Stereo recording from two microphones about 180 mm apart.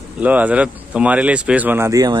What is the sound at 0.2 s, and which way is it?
Speech, 10° right (ahead or behind).